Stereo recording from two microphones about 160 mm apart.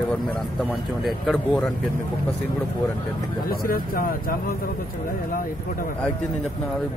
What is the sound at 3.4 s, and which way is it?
Speech, 65° left (ahead or behind).